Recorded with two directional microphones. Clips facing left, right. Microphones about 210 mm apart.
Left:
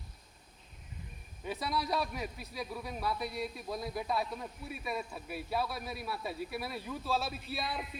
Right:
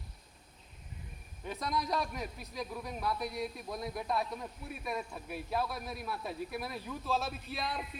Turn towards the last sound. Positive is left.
turn(degrees=5)  # may be behind; listen again after turning